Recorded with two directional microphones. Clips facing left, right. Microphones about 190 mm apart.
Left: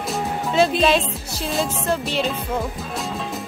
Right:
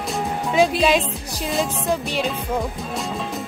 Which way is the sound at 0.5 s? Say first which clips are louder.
Even; 15° right (ahead or behind).